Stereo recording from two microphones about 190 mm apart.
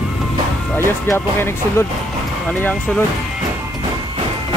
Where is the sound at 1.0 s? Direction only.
15° left (ahead or behind).